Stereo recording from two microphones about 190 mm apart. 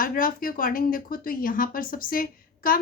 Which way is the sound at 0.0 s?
45° left (ahead or behind).